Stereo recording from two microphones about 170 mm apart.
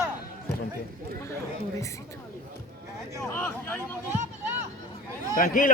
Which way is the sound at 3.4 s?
10° left (ahead or behind).